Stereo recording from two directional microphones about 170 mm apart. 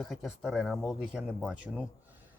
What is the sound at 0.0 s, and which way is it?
Speech, centre (ahead or behind).